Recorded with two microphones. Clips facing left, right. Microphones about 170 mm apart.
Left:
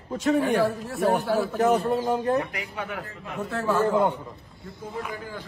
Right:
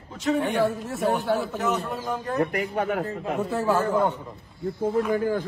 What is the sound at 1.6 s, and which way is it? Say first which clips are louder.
Speech: left 5 dB; 35° left (ahead or behind).